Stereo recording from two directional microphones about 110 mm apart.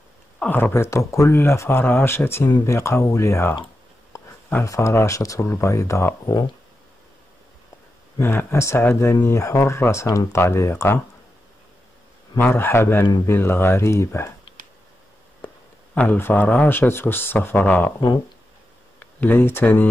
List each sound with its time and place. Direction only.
0.4 s speech: 15° left (ahead or behind)
4.6 s speech: 25° left (ahead or behind)
8.2 s speech: 20° left (ahead or behind)
12.4 s speech: 20° left (ahead or behind)
15.4 s a man's voice: 15° left (ahead or behind)
18.9 s speech: 15° left (ahead or behind)